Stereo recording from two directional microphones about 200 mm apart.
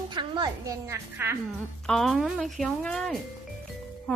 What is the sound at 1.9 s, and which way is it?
A woman's voice, centre (ahead or behind).